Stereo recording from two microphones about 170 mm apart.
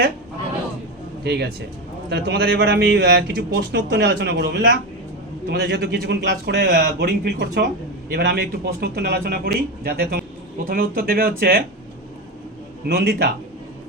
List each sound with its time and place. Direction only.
1.2 s speech: 80° right; by 11.6 s 60° right (ahead or behind)
12.9 s speech: 75° right (ahead or behind)